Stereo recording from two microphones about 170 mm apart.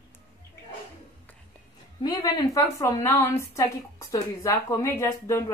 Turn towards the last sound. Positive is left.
turn(degrees=15)  # may be behind; listen again after turning